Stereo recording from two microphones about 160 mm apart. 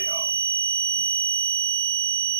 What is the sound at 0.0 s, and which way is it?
Fire alarm, 15° right (ahead or behind).